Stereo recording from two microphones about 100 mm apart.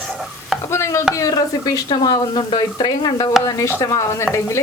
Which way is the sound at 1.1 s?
35° left (ahead or behind).